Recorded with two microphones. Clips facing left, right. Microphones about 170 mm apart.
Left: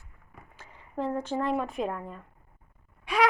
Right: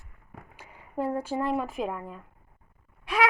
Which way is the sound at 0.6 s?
10° right (ahead or behind).